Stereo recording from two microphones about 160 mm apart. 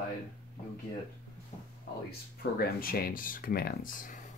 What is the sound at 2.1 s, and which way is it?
Speech, 70° left (ahead or behind).